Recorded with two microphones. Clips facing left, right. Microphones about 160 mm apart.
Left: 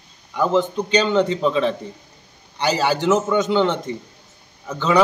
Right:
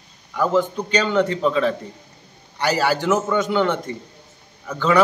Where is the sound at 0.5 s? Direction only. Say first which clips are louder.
Left 2 dB; 20° left (ahead or behind).